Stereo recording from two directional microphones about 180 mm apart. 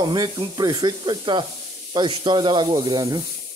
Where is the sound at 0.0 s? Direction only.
20° right (ahead or behind).